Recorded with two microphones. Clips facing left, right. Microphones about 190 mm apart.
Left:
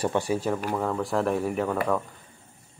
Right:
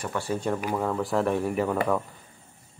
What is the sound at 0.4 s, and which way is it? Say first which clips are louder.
Speech: even; centre (ahead or behind).